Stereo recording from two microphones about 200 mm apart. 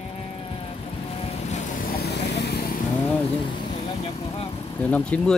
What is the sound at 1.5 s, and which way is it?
Vehicle, 45° left (ahead or behind).